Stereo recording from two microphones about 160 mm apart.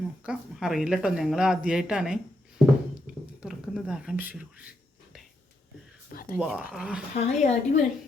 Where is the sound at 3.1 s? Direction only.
5° right (ahead or behind).